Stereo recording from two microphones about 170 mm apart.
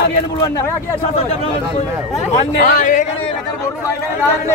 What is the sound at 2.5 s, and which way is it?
Speech, 50° left (ahead or behind).